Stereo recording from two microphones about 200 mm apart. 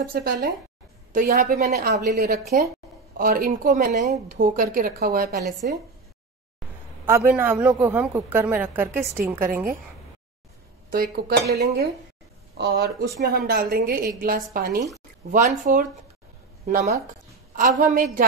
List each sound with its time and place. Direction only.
0.0 s speech: 50° right (ahead or behind)
7.1 s a woman's voice: 10° right (ahead or behind)
10.9 s speech: 50° right (ahead or behind)
12.5 s a woman's voice: 55° right (ahead or behind)